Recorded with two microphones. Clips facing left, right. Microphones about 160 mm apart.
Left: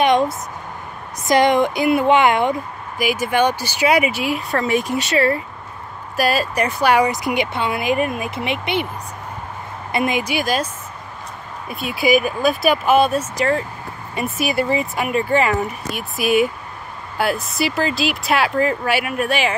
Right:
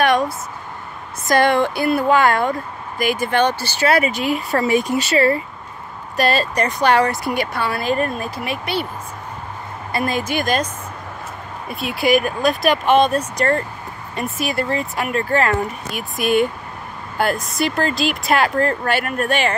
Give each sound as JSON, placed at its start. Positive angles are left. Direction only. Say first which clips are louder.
{"t": 0.0, "sound": "a sound", "louder": "left 1 dB", "side_deg": 20}
{"t": 1.2, "sound": "speech", "louder": "left 1 dB", "side_deg": 20}
{"t": 3.0, "sound": "speech", "louder": "even", "side_deg": 10}
{"t": 9.9, "sound": "speech", "louder": "left 1 dB", "side_deg": 15}
{"t": 11.7, "sound": "speech", "louder": "even", "side_deg": 0}